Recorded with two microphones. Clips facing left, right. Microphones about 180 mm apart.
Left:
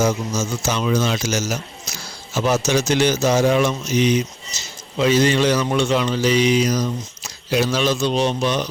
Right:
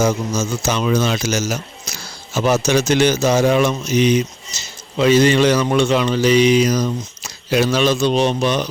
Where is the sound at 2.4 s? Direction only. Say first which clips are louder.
Right 3 dB; 65° right (ahead or behind).